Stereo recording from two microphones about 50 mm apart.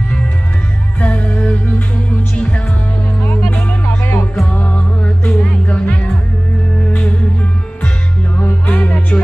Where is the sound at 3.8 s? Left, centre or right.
Left.